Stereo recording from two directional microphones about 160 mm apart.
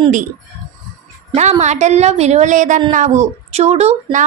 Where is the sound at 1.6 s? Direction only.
45° right (ahead or behind).